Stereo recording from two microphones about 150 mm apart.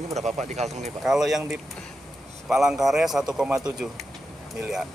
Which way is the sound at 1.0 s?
Centre (ahead or behind).